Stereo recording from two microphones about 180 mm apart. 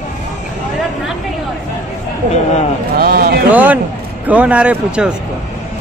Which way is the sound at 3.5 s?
10° right (ahead or behind).